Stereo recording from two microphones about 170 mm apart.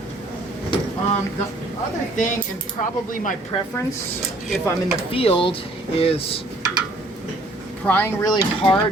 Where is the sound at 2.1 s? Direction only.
45° left (ahead or behind).